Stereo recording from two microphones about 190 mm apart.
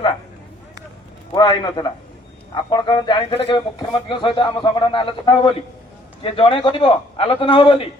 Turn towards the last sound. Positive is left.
turn(degrees=30)  # may be behind; listen again after turning